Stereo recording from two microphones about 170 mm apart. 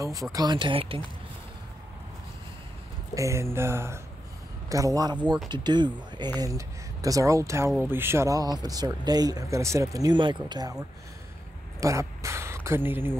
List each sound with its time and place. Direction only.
0.0 s speech: 20° right (ahead or behind)
3.2 s mantra: 15° right (ahead or behind)
4.6 s speech: 20° right (ahead or behind)
11.8 s a sound: 20° right (ahead or behind)